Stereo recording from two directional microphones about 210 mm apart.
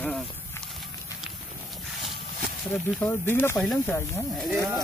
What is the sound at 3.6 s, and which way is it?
Speech, 5° left (ahead or behind).